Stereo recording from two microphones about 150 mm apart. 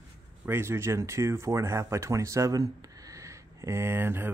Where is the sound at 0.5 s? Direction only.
15° right (ahead or behind).